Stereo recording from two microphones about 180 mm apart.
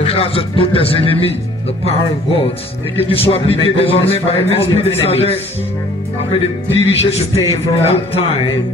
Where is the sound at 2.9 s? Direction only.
30° left (ahead or behind).